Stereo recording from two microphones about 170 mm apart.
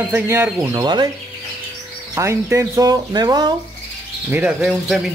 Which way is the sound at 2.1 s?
15° right (ahead or behind).